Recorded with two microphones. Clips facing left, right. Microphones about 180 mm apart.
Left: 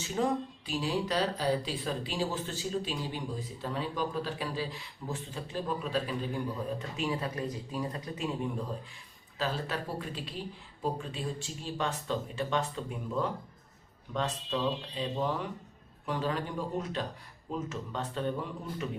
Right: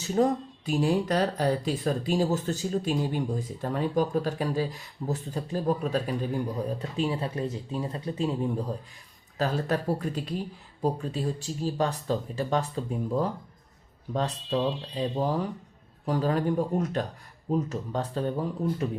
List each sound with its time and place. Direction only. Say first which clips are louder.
0.0 s speech: right 6 dB; 40° right (ahead or behind)
6.9 s speech: right 5 dB; 30° right (ahead or behind)
9.4 s speech: right 6 dB; 45° right (ahead or behind)